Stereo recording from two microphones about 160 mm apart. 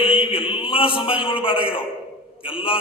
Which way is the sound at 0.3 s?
35° left (ahead or behind).